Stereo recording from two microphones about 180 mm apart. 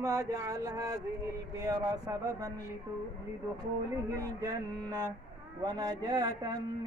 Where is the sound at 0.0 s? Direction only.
20° right (ahead or behind).